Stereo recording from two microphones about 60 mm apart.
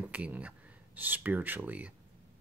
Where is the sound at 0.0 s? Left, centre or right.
Right.